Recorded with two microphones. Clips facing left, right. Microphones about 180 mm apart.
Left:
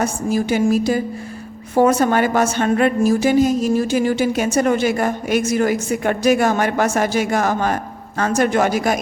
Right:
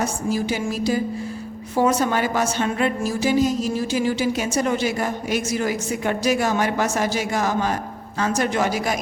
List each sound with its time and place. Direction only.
0.0 s a woman's voice: 55° left (ahead or behind)